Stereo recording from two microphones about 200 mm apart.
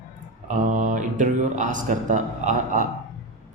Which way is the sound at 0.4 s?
40° right (ahead or behind).